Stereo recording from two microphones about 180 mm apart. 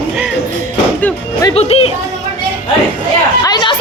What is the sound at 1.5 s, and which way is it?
Music, 35° left (ahead or behind).